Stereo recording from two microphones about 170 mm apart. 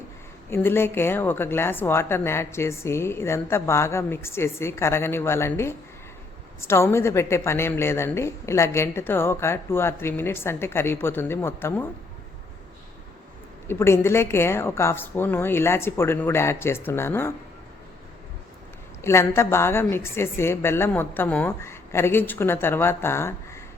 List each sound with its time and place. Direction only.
0.5 s a woman's voice: 15° left (ahead or behind)
13.7 s a woman's voice: 15° left (ahead or behind)
19.0 s a woman's voice: 15° left (ahead or behind)